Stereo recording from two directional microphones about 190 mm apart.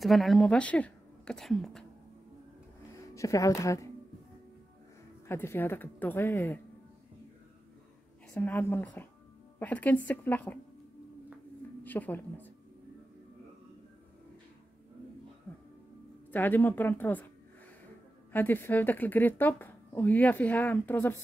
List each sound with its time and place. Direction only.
0.0 s a woman's voice: centre (ahead or behind)
2.9 s speech: 15° left (ahead or behind)
5.3 s speech: 10° left (ahead or behind)
8.4 s speech: 10° left (ahead or behind)
11.8 s speech: 10° left (ahead or behind)
15.5 s music: 5° left (ahead or behind)
16.3 s speech: 10° left (ahead or behind)
18.3 s speech: 10° left (ahead or behind)